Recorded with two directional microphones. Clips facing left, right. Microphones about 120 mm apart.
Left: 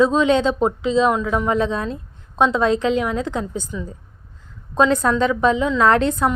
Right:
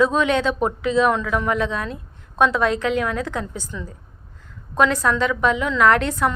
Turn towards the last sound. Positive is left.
turn(degrees=20)  # may be behind; listen again after turning